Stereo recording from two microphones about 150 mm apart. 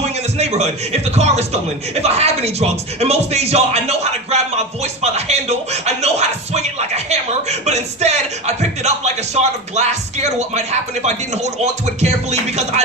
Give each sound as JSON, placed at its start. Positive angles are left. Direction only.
{"t": 0.4, "sound": "speech", "side_deg": -45}